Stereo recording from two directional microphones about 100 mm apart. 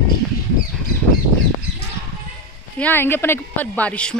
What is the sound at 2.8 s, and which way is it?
Speech, 20° left (ahead or behind).